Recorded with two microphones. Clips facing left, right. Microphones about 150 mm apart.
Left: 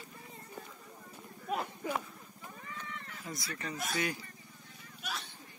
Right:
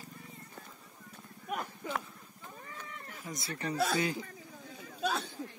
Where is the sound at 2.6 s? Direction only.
40° right (ahead or behind).